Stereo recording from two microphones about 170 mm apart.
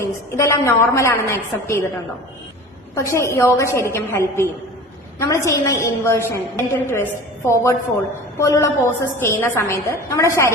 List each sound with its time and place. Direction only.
0.0 s a woman's voice: 15° left (ahead or behind)
2.9 s a woman's voice: 15° left (ahead or behind)